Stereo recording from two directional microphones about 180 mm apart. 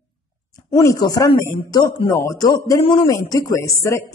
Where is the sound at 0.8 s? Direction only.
20° left (ahead or behind).